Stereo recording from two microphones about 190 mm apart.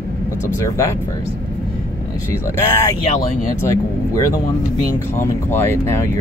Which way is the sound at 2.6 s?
15° left (ahead or behind).